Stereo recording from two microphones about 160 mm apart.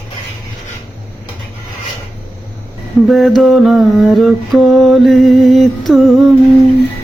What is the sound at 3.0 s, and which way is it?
Mantra, centre (ahead or behind).